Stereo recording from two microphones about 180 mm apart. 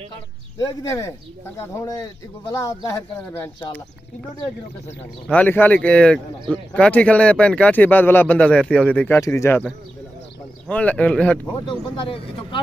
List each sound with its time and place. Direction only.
0.6 s speech: 15° left (ahead or behind)
5.2 s speech: 10° left (ahead or behind)